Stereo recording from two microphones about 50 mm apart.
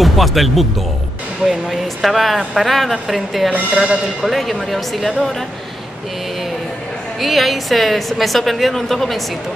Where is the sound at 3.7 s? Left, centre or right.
Right.